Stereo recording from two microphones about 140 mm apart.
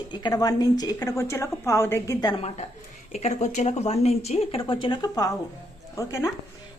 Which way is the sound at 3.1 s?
55° left (ahead or behind).